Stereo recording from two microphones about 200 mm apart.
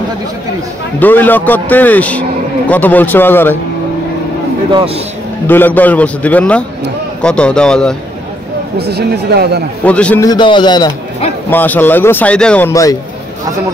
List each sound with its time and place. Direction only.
0.9 s speech: 10° left (ahead or behind)
5.5 s a man's voice: 10° left (ahead or behind)
8.7 s speech: 55° right (ahead or behind)
9.8 s speech: 5° left (ahead or behind)
10.2 s a man's voice: 20° left (ahead or behind)
11.5 s speech: 10° left (ahead or behind)